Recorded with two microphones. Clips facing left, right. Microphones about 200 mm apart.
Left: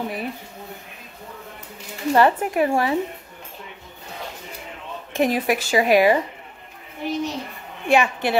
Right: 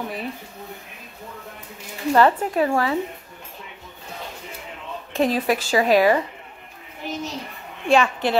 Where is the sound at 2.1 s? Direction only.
15° left (ahead or behind).